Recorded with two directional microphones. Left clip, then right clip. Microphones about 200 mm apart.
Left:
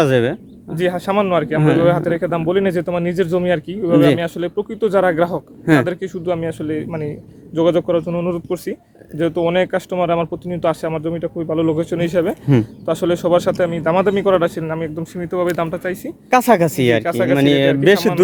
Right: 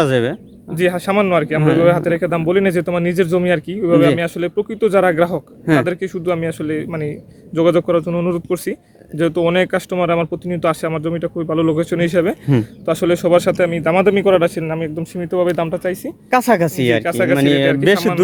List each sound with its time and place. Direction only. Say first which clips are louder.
0.0 s speech: left 1 dB; centre (ahead or behind)
0.8 s speech: right 2 dB; 40° right (ahead or behind); by 16.1 s 25° right (ahead or behind)
16.3 s speech: left 1 dB; centre (ahead or behind)
17.0 s speech: right 1 dB; 35° right (ahead or behind)
17.3 s speech: left 1 dB; centre (ahead or behind)